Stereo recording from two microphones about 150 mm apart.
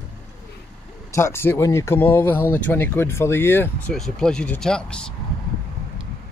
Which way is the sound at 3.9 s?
5° left (ahead or behind).